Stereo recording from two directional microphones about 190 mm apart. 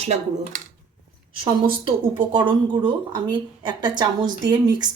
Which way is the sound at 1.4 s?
25° right (ahead or behind).